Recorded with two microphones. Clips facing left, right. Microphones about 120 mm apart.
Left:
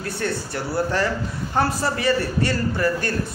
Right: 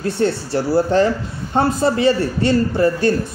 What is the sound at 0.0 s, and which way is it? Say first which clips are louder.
A man's voice: right 7 dB; 25° right (ahead or behind).